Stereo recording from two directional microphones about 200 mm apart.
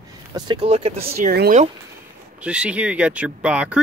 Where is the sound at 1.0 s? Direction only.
50° right (ahead or behind).